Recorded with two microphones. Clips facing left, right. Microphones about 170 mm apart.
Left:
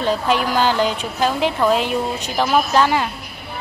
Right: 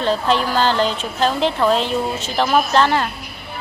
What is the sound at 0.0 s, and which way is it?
A woman's voice, 10° left (ahead or behind).